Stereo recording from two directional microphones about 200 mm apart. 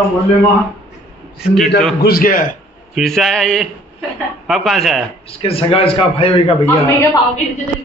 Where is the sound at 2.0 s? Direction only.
50° left (ahead or behind).